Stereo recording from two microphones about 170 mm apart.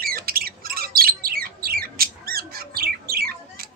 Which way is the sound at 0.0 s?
60° right (ahead or behind).